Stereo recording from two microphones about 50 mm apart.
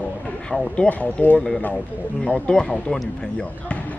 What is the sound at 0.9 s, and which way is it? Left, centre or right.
Speech, left.